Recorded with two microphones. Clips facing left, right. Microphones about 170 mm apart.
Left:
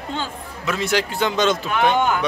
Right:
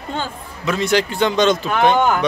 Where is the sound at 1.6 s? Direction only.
40° right (ahead or behind).